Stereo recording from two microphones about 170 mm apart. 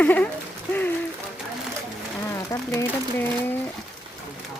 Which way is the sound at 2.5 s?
15° left (ahead or behind).